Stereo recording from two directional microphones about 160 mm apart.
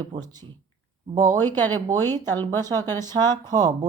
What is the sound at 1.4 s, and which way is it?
Speech, 10° left (ahead or behind).